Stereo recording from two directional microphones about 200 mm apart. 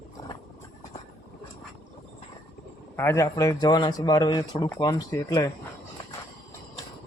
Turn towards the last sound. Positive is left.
turn(degrees=15)  # may be behind; listen again after turning